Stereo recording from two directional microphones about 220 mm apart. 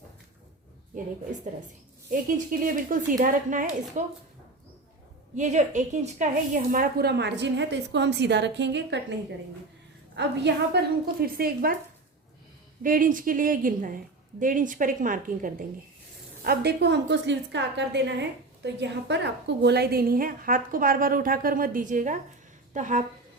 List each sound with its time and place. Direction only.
1.5 s a woman's voice: 35° right (ahead or behind)
5.4 s a woman's voice: 30° right (ahead or behind); by 9.1 s 55° right (ahead or behind)
10.2 s a woman's voice: 50° right (ahead or behind)
12.8 s a woman's voice: 40° right (ahead or behind)